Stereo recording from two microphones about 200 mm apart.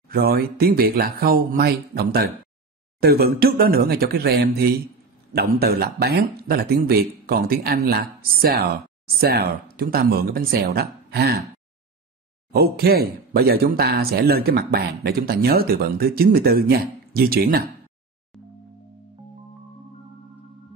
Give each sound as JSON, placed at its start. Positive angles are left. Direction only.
{"t": 0.1, "sound": "speech", "side_deg": -50}
{"t": 12.5, "sound": "speech", "side_deg": -50}